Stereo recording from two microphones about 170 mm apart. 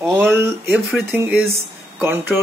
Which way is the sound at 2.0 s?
10° right (ahead or behind).